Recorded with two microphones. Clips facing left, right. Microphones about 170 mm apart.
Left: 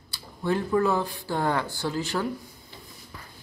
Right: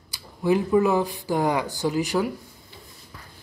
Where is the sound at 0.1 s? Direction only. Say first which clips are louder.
Right 5 dB; 10° right (ahead or behind).